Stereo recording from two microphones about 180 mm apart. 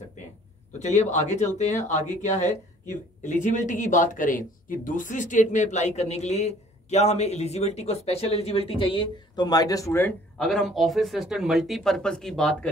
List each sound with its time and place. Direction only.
0.7 s speech: 40° left (ahead or behind); by 10.1 s 15° left (ahead or behind)
10.3 s speech: centre (ahead or behind)